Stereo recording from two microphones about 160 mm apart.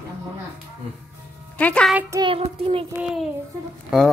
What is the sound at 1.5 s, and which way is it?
Speech, 10° left (ahead or behind).